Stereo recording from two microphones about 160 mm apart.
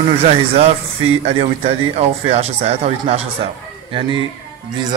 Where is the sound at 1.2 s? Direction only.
40° right (ahead or behind).